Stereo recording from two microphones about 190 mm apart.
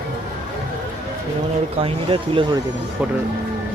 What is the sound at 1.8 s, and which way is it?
Speech, 30° right (ahead or behind).